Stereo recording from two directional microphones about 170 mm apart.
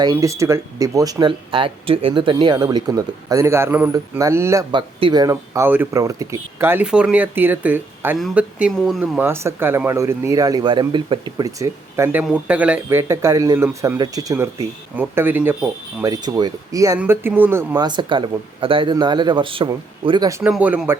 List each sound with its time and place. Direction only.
0.0 s speech: 20° right (ahead or behind)
4.7 s speech: 30° right (ahead or behind); by 8.7 s 5° right (ahead or behind)
8.7 s speech: 5° left (ahead or behind)
9.0 s speech: 10° right (ahead or behind)
16.0 s speech: 20° right (ahead or behind)
17.7 s speech: 25° right (ahead or behind)
20.4 s speech: 10° right (ahead or behind)